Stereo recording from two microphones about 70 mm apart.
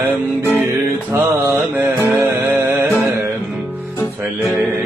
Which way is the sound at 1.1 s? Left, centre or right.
Right.